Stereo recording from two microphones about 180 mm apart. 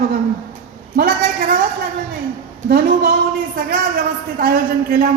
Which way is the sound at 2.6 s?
55° right (ahead or behind).